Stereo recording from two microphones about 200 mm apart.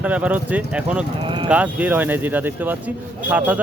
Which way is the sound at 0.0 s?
5° right (ahead or behind).